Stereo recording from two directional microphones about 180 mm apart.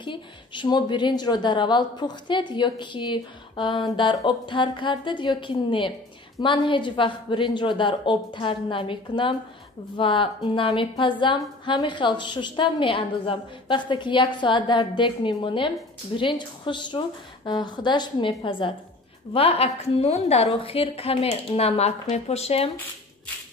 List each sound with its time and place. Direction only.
0.0 s a woman's voice: 25° left (ahead or behind)